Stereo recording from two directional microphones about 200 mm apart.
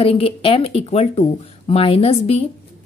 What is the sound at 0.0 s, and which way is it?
A woman's voice, 30° left (ahead or behind).